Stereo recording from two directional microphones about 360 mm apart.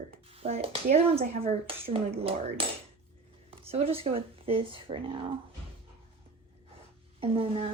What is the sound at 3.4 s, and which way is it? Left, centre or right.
Speech, centre.